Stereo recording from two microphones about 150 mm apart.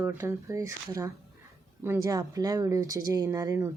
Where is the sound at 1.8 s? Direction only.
20° right (ahead or behind).